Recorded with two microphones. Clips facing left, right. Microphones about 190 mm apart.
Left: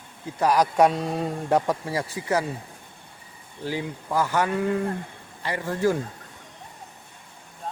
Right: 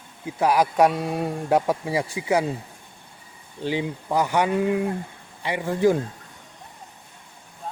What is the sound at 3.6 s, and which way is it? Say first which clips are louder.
Speech: right 4 dB; 20° right (ahead or behind).